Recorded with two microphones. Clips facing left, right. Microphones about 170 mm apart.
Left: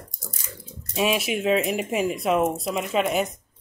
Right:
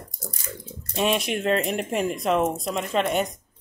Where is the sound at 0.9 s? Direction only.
5° left (ahead or behind).